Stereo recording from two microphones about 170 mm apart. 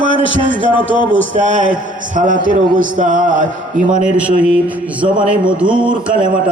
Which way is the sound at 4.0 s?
10° right (ahead or behind).